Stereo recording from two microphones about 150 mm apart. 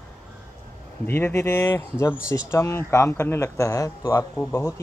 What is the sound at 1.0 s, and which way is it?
Speech, 15° left (ahead or behind).